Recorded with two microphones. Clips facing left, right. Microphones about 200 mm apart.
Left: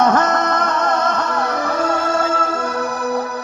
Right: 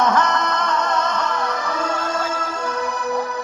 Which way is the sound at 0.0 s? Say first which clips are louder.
Left 3 dB; 50° left (ahead or behind).